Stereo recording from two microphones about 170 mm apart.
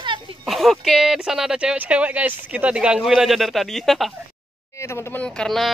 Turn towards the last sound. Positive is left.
turn(degrees=0)  # may be behind; listen again after turning